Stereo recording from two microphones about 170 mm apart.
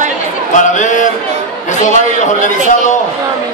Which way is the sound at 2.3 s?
45° left (ahead or behind).